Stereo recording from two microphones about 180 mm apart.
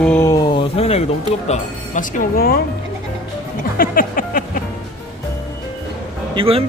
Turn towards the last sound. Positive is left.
turn(degrees=-30)  # may be behind; listen again after turning